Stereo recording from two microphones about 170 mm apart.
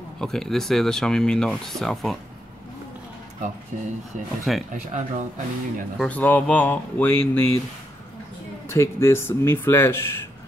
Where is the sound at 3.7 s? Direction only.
45° right (ahead or behind).